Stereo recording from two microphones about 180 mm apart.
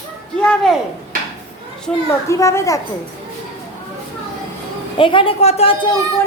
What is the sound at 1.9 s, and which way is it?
Speech, 5° left (ahead or behind).